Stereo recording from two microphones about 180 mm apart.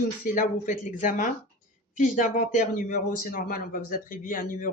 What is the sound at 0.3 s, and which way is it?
A man's voice, 45° left (ahead or behind).